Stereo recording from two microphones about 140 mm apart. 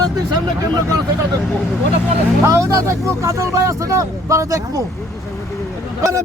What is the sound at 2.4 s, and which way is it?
Speech, 20° right (ahead or behind).